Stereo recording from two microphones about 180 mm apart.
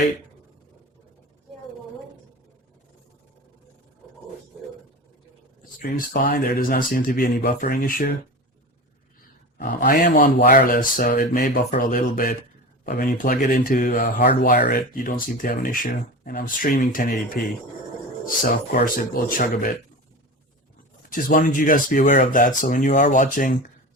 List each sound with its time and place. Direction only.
5.8 s speech: 50° left (ahead or behind)
9.2 s speech: 50° left (ahead or behind)
18.7 s speech: 50° left (ahead or behind)
21.1 s speech: 50° left (ahead or behind)